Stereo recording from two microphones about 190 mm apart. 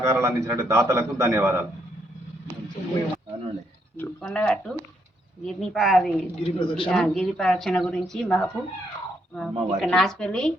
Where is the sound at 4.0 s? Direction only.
5° left (ahead or behind).